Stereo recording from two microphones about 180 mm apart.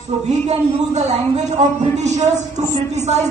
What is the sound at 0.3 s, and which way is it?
A man's voice, 40° right (ahead or behind).